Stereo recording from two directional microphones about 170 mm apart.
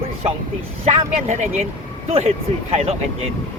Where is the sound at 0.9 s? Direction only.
40° right (ahead or behind).